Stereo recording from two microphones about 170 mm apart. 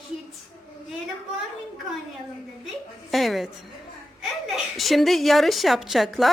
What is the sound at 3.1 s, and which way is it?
Speech, centre (ahead or behind).